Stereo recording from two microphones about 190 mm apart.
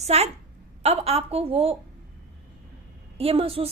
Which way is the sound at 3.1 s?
30° right (ahead or behind).